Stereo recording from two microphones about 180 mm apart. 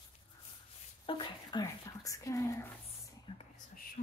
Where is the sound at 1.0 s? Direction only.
25° left (ahead or behind).